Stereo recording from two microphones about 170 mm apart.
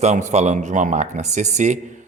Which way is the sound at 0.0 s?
45° right (ahead or behind).